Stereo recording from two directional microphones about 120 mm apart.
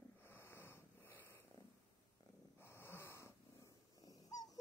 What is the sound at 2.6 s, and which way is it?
Snort, 20° left (ahead or behind).